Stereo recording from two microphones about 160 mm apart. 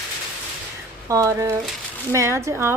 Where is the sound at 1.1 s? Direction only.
20° right (ahead or behind).